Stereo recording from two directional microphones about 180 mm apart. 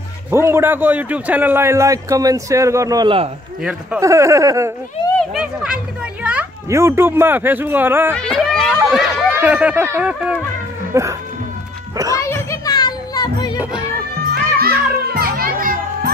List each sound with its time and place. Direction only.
0.3 s a man's voice: 15° right (ahead or behind)
5.3 s a man's voice: 5° right (ahead or behind)
8.1 s a man's voice: 5° left (ahead or behind); by 11.1 s 15° right (ahead or behind)
12.2 s children playing: 15° left (ahead or behind)
14.3 s children playing: 60° right (ahead or behind)